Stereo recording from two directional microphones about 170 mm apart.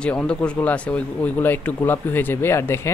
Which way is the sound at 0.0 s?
5° left (ahead or behind).